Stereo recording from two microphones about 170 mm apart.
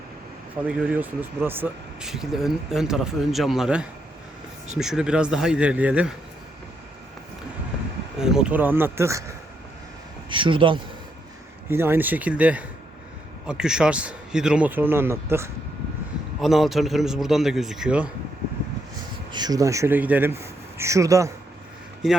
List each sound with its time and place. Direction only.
0.6 s speech: 5° right (ahead or behind)
8.2 s a man's voice: 5° right (ahead or behind)
10.2 s speech: 30° right (ahead or behind)
11.7 s a man's voice: 15° right (ahead or behind)
16.4 s speech: centre (ahead or behind)
19.3 s a man's voice: 25° right (ahead or behind)
22.0 s speech: centre (ahead or behind)